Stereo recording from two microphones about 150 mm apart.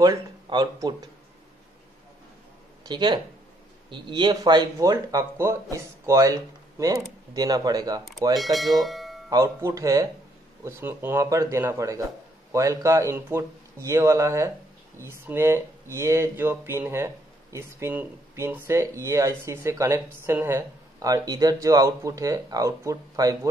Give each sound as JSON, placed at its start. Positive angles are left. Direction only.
{"t": 0.0, "sound": "speech", "side_deg": -25}
{"t": 2.8, "sound": "speech", "side_deg": -30}
{"t": 8.4, "sound": "speech", "side_deg": 0}
{"t": 9.3, "sound": "speech", "side_deg": -20}